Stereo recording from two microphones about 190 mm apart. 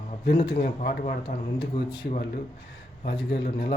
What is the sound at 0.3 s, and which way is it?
Speech, 30° left (ahead or behind).